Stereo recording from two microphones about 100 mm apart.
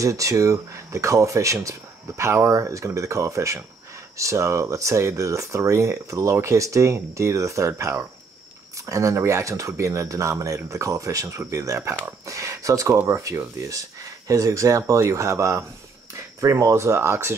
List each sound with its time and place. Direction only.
0.0 s speech: 35° right (ahead or behind)